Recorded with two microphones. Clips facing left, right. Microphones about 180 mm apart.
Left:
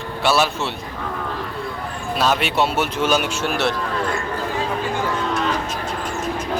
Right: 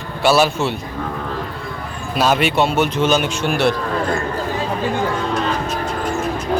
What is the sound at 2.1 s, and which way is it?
Speech, centre (ahead or behind).